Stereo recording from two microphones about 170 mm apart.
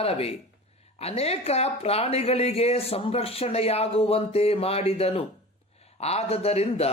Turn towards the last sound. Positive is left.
turn(degrees=35)  # may be behind; listen again after turning